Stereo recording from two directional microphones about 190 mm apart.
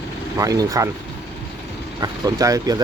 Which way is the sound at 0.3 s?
20° right (ahead or behind).